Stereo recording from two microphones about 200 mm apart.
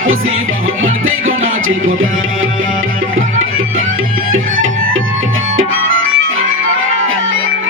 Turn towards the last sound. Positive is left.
turn(degrees=-85)